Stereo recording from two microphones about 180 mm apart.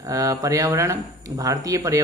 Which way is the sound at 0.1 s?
20° right (ahead or behind).